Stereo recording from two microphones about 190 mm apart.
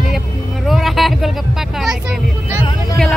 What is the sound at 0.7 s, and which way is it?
Vehicle, centre (ahead or behind).